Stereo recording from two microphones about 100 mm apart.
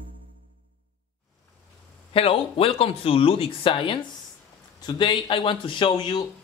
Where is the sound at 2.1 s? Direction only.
70° left (ahead or behind); by 6.2 s 50° left (ahead or behind).